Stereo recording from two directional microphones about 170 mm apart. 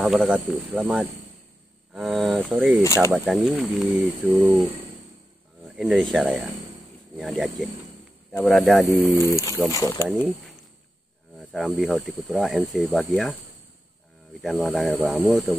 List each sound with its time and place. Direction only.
0.0 s speech: 5° right (ahead or behind)
2.8 s speech: 15° left (ahead or behind)
3.2 s speech: 5° right (ahead or behind)
5.8 s speech: centre (ahead or behind)
9.3 s speech: 20° left (ahead or behind)
11.3 s speech: centre (ahead or behind)
14.4 s speech: centre (ahead or behind)